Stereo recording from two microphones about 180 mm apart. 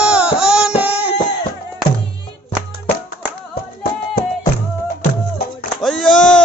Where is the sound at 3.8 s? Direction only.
50° left (ahead or behind).